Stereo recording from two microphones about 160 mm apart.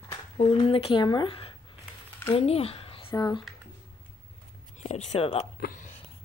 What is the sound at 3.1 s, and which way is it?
Speech, 25° left (ahead or behind).